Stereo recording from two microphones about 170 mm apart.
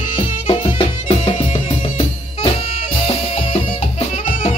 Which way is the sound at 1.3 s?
45° left (ahead or behind).